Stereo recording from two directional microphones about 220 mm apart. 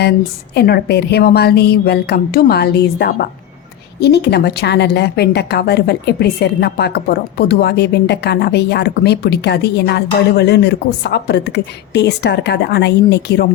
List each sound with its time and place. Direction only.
0.5 s a woman's voice: 45° left (ahead or behind)